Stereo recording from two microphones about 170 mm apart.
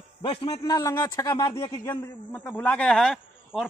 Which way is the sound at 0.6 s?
20° left (ahead or behind).